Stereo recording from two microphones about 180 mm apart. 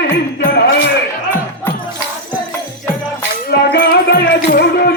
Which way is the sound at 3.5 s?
60° left (ahead or behind).